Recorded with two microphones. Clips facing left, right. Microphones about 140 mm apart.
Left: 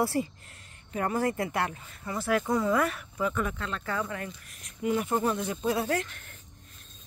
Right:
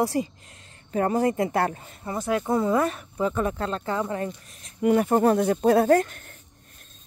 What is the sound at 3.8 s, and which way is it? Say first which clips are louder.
Speech: right 4 dB; 25° right (ahead or behind).